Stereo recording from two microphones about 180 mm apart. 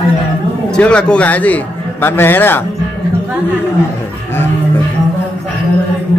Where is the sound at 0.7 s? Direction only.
5° left (ahead or behind).